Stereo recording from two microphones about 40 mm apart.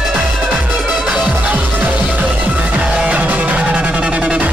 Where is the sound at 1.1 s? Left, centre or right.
Right.